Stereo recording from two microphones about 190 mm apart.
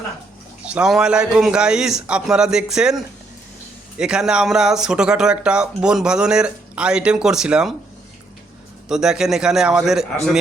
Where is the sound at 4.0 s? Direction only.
5° right (ahead or behind).